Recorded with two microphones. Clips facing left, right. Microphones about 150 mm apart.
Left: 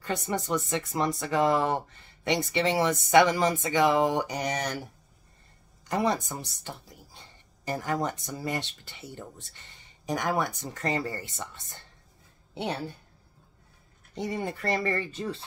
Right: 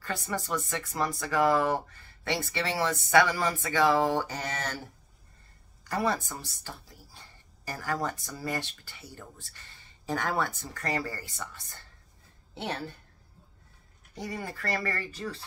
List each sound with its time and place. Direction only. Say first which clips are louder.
0.0 s speech: left 3 dB; 20° left (ahead or behind)
5.9 s speech: left 2 dB; 20° left (ahead or behind)
14.1 s speech: left 5 dB; 25° left (ahead or behind)